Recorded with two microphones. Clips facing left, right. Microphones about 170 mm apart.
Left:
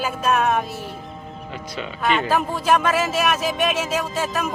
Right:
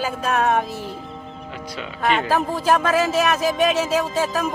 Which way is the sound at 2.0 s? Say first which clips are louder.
Right 1 dB; 40° right (ahead or behind).